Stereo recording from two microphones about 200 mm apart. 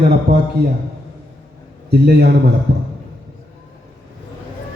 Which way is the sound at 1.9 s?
55° right (ahead or behind).